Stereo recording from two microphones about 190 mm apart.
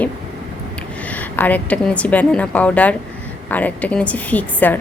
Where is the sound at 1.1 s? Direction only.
10° left (ahead or behind).